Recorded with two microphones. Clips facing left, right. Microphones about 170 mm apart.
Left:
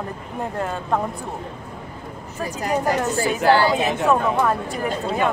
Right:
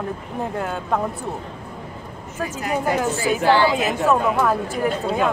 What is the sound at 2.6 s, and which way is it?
Speech, 40° left (ahead or behind).